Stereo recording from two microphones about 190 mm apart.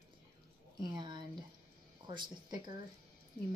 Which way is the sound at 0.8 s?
25° right (ahead or behind).